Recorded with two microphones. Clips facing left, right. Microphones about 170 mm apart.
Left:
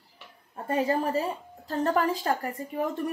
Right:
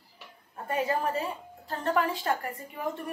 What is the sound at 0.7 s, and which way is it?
A woman's voice, 30° left (ahead or behind).